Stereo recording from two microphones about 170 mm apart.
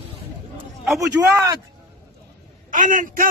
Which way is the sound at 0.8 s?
Centre (ahead or behind).